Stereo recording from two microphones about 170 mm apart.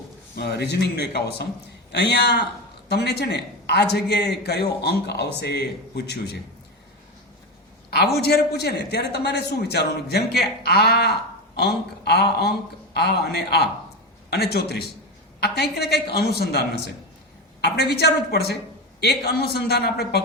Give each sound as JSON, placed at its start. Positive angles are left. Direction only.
{"t": 0.3, "sound": "a man's voice", "side_deg": 75}
{"t": 7.9, "sound": "a man's voice", "side_deg": 70}